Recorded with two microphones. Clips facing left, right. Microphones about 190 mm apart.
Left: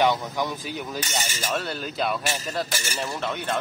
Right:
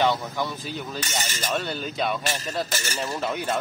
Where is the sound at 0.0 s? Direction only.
15° left (ahead or behind).